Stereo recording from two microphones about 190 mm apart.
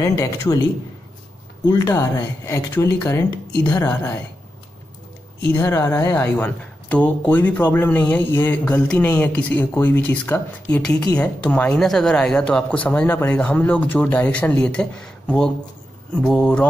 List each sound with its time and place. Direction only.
0.0 s speech: 15° left (ahead or behind)
1.7 s speech: 15° left (ahead or behind)
5.5 s speech: 10° left (ahead or behind)
16.2 s mantra: 5° left (ahead or behind)